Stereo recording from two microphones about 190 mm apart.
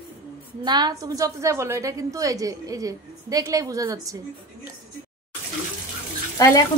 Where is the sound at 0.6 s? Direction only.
20° right (ahead or behind).